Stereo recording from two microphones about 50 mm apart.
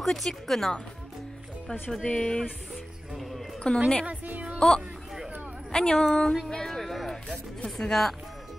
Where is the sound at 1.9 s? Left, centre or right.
Centre.